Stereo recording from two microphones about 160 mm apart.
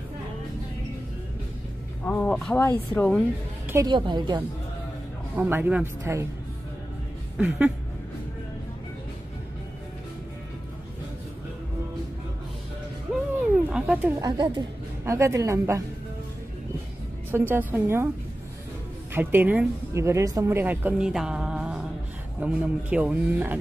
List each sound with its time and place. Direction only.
2.0 s speech: 10° left (ahead or behind)
3.7 s a woman's voice: 30° right (ahead or behind)
5.3 s speech: 10° right (ahead or behind)
7.3 s speech: 5° right (ahead or behind)
13.7 s a sound: 10° right (ahead or behind)
14.2 s a woman's voice: 30° right (ahead or behind)
15.0 s speech: 20° right (ahead or behind)
17.3 s speech: 10° right (ahead or behind)
19.1 s speech: 10° right (ahead or behind)